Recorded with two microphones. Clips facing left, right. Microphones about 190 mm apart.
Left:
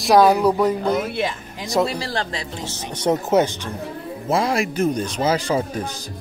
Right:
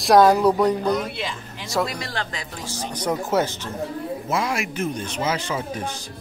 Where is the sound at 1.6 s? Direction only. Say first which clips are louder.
Left 4 dB; 15° left (ahead or behind).